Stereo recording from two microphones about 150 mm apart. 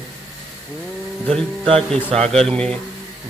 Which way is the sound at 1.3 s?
5° left (ahead or behind).